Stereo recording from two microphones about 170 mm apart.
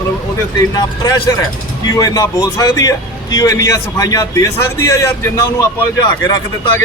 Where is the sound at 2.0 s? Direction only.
20° left (ahead or behind).